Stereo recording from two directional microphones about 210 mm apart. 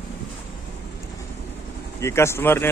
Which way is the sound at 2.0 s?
10° left (ahead or behind).